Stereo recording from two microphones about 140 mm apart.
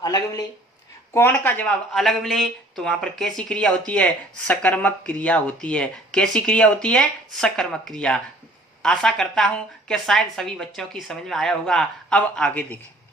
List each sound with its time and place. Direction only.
0.0 s speech: 30° left (ahead or behind)
1.1 s a woman's voice: 15° left (ahead or behind)